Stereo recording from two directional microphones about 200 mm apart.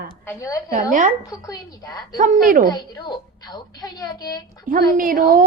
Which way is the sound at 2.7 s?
20° left (ahead or behind).